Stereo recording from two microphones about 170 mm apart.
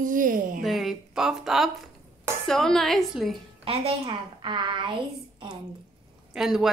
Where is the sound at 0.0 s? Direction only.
50° right (ahead or behind).